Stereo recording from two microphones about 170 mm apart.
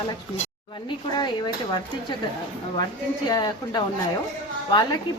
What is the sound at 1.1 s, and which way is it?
Speech, 25° left (ahead or behind).